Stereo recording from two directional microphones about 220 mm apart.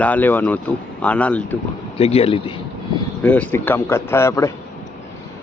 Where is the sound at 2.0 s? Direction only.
25° left (ahead or behind).